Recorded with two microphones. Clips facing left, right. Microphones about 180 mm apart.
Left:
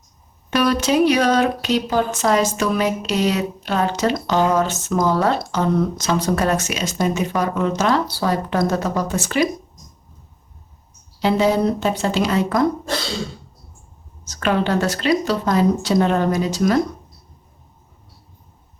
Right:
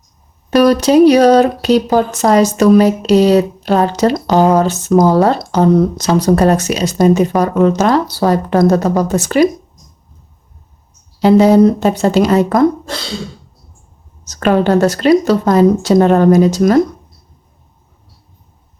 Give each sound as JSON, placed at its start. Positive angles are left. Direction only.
{"t": 0.5, "sound": "speech", "side_deg": -40}
{"t": 11.2, "sound": "a woman's voice", "side_deg": -40}
{"t": 14.3, "sound": "a woman's voice", "side_deg": -45}